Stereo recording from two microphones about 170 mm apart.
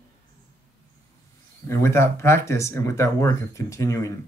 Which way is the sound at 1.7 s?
15° left (ahead or behind).